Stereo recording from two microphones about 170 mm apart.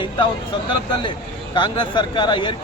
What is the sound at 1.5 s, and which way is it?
Speech, 30° left (ahead or behind).